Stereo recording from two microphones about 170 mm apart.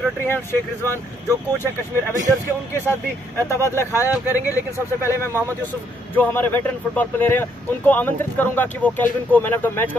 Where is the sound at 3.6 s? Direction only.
15° left (ahead or behind).